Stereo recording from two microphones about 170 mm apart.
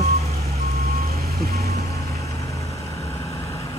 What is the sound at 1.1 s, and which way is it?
Vehicle, 65° right (ahead or behind).